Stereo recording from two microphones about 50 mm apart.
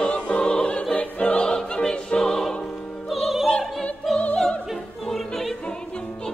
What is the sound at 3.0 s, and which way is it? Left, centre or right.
Opera, centre.